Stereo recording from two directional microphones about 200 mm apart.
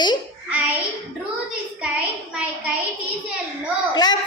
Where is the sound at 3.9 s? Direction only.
20° left (ahead or behind).